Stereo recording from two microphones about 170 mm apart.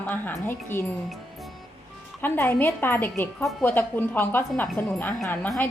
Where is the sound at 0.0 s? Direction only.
10° left (ahead or behind).